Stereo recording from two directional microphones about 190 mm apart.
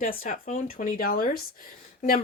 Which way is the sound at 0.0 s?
50° left (ahead or behind).